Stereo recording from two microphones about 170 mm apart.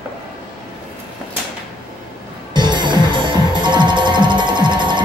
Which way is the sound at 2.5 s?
25° right (ahead or behind).